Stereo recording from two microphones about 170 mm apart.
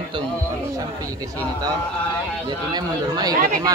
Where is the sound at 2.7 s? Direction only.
25° right (ahead or behind).